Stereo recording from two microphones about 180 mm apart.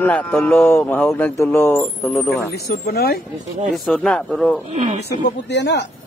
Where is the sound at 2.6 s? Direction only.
60° left (ahead or behind).